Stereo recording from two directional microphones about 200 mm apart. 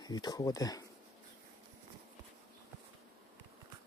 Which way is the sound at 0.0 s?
20° left (ahead or behind).